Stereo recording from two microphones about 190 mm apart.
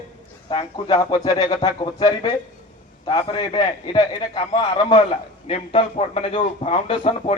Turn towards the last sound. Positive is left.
turn(degrees=30)  # may be behind; listen again after turning